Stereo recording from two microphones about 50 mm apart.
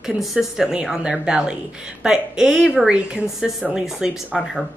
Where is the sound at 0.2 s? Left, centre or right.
Centre.